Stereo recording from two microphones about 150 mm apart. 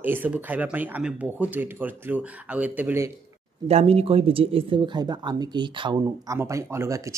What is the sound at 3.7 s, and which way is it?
Speech, 45° right (ahead or behind).